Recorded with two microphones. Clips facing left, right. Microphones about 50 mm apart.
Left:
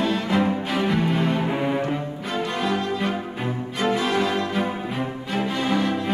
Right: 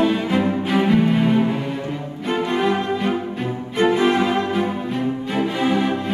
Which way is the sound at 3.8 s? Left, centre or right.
Right.